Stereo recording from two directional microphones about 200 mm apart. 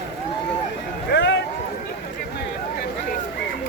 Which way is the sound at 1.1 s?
60° left (ahead or behind).